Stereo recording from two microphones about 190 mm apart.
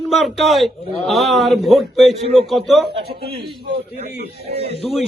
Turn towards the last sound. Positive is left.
turn(degrees=0)  # may be behind; listen again after turning